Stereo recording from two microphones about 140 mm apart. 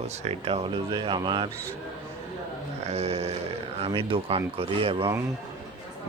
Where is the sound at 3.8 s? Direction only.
40° right (ahead or behind).